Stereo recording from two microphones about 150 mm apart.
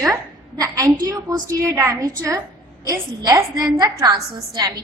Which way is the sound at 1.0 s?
20° right (ahead or behind).